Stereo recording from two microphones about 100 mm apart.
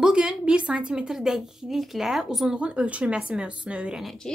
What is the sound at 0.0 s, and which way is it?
A woman's voice, 10° right (ahead or behind).